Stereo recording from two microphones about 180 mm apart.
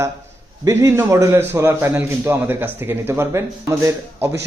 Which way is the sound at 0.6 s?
15° right (ahead or behind).